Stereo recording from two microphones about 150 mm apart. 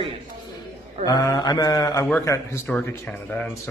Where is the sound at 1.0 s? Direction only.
25° left (ahead or behind).